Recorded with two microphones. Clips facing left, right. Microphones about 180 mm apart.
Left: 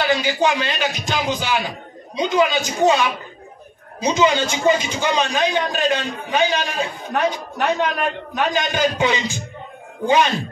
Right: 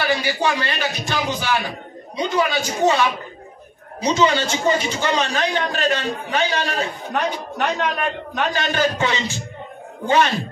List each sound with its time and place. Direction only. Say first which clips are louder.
0.0 s a man's voice: left 2 dB; 20° left (ahead or behind)
7.2 s speech: left 2 dB; 5° left (ahead or behind)
8.5 s a man's voice: left 1 dB; 15° left (ahead or behind)